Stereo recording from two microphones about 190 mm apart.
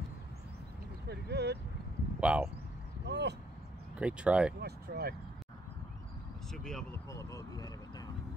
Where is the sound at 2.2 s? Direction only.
5° right (ahead or behind).